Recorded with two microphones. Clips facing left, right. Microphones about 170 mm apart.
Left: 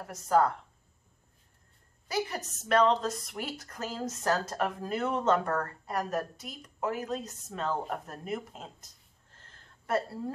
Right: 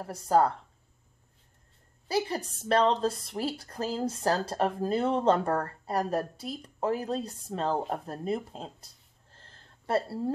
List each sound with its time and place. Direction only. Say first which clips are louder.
0.0 s a woman's voice: right 2 dB; 30° right (ahead or behind)
2.0 s a woman's voice: right 3 dB; 30° right (ahead or behind)
9.9 s speech: right 2 dB; 30° right (ahead or behind)